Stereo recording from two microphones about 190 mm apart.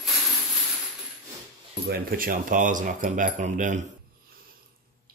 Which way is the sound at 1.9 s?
55° right (ahead or behind).